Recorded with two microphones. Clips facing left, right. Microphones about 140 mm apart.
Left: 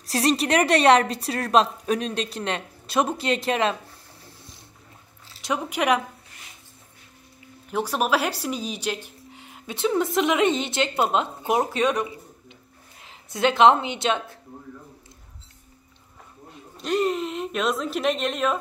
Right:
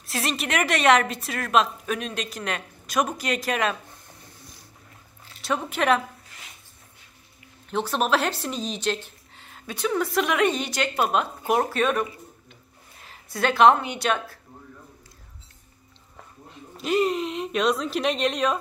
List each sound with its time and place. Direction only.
0.0 s a woman's voice: 35° left (ahead or behind)
5.4 s speech: 15° left (ahead or behind)
7.7 s speech: 10° left (ahead or behind)
16.7 s speech: centre (ahead or behind)